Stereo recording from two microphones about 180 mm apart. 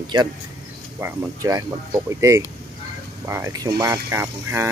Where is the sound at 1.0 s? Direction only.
15° right (ahead or behind).